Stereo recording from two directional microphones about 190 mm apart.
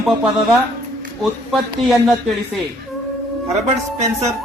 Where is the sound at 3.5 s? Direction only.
35° right (ahead or behind).